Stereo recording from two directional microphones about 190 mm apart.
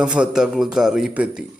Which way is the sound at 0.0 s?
5° right (ahead or behind).